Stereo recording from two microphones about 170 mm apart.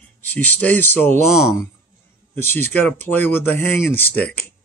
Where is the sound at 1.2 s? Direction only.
5° right (ahead or behind).